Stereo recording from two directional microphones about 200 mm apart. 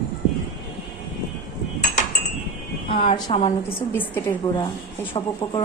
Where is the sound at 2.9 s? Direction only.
25° left (ahead or behind).